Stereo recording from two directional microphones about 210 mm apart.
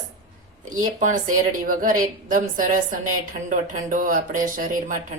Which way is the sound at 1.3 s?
40° right (ahead or behind).